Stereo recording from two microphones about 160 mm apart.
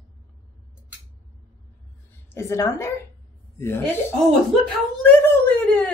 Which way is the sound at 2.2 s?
15° left (ahead or behind).